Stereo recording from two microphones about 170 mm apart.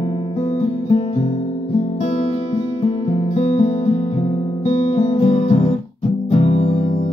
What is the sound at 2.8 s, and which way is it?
Music, 40° left (ahead or behind).